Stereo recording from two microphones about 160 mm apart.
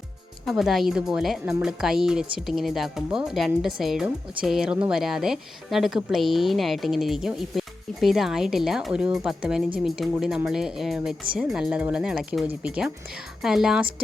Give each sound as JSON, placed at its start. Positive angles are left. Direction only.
{"t": 0.4, "sound": "a woman's voice", "side_deg": 0}